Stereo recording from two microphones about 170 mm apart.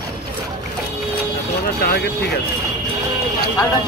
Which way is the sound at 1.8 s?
65° left (ahead or behind).